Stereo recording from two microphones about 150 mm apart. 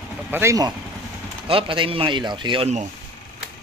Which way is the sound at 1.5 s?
35° right (ahead or behind).